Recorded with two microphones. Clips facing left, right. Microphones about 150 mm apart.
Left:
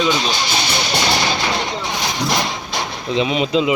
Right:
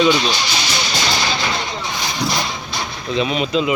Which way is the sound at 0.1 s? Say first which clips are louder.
Right 1 dB; 50° left (ahead or behind).